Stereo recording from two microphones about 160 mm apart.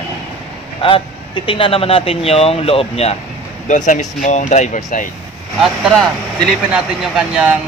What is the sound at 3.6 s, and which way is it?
Speech, 50° left (ahead or behind).